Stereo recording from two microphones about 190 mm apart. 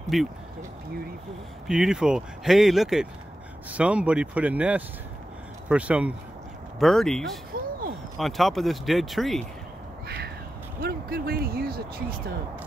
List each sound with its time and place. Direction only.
0.1 s speech: centre (ahead or behind)
1.7 s speech: 5° right (ahead or behind)
10.0 s bird: 55° right (ahead or behind)
10.8 s speech: 50° right (ahead or behind)